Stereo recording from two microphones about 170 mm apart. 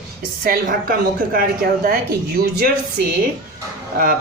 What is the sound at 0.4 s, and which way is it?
Speech, 60° right (ahead or behind).